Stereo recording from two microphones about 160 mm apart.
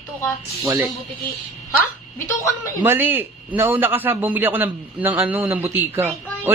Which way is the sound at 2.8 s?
15° right (ahead or behind).